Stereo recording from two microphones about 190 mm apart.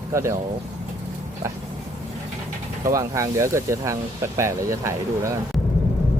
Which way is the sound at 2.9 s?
15° right (ahead or behind).